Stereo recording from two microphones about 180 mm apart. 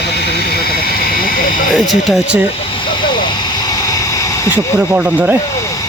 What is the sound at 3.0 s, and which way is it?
Vehicle, 25° left (ahead or behind).